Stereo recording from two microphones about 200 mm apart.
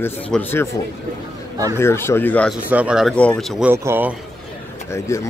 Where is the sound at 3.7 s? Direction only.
10° right (ahead or behind).